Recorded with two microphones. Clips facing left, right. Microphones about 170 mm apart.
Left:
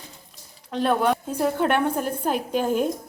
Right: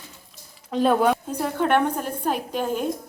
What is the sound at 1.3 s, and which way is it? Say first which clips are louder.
A woman's voice: even; 10° left (ahead or behind).